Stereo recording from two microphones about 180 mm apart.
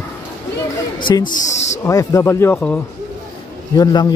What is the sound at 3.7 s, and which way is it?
Speech, 20° left (ahead or behind).